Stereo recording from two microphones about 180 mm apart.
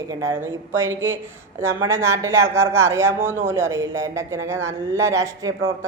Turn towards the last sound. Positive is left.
turn(degrees=-15)  # may be behind; listen again after turning